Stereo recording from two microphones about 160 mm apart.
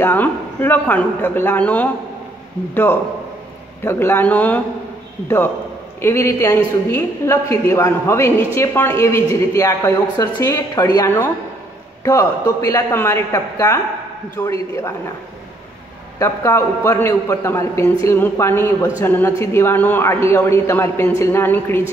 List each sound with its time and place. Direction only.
0.0 s a man's voice: 10° left (ahead or behind)
5.9 s a man's voice: 15° left (ahead or behind)
16.2 s a man's voice: 20° left (ahead or behind)